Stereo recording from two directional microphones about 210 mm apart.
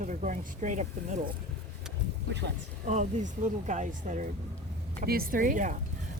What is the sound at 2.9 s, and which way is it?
Speech, 35° right (ahead or behind).